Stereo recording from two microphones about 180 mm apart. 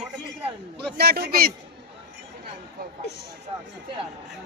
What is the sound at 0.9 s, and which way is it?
Speech, 60° right (ahead or behind).